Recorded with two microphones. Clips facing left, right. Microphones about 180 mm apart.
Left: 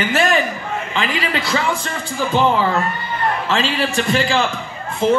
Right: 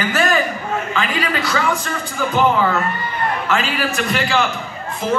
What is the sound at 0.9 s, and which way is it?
Speech, 25° left (ahead or behind).